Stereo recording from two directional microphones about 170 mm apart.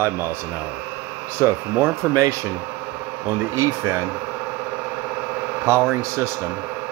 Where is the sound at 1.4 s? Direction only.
15° right (ahead or behind).